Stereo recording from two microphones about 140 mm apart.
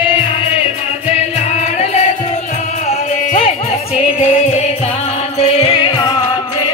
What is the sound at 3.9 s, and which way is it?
Music, 50° left (ahead or behind).